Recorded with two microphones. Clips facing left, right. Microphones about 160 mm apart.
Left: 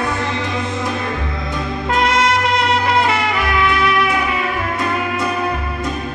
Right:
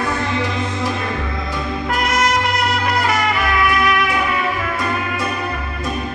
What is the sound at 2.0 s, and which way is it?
Music, 30° left (ahead or behind).